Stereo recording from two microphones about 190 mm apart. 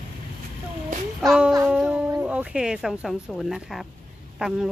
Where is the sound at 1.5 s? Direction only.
5° right (ahead or behind).